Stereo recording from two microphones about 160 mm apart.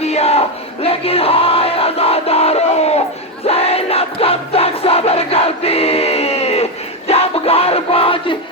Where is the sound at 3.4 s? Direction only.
40° left (ahead or behind).